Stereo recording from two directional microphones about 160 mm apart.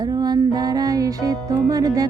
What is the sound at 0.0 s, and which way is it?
Music, 25° right (ahead or behind).